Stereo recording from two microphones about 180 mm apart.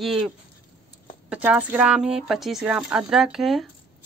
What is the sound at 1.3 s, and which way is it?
Speech, 5° right (ahead or behind).